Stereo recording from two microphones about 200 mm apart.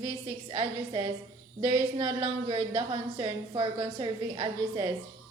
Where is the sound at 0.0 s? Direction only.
20° right (ahead or behind).